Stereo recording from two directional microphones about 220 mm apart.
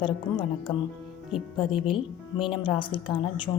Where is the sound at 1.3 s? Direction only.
Centre (ahead or behind).